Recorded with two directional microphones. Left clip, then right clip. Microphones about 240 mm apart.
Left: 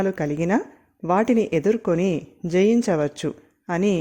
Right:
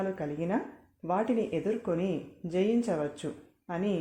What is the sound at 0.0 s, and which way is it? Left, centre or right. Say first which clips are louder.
Speech: left 10 dB; left.